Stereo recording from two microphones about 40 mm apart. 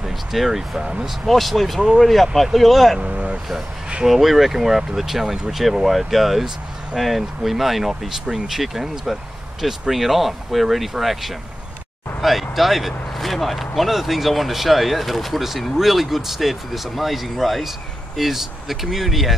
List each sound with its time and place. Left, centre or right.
0.0 s speech: centre
0.7 s speech: right
1.2 s speech: centre
1.8 s speech: centre
2.3 s speech: centre
3.0 s speech: right
4.0 s speech: centre